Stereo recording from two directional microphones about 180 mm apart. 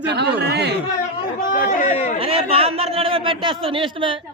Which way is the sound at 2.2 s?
30° right (ahead or behind).